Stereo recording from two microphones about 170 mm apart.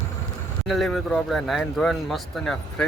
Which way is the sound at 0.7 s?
Centre (ahead or behind).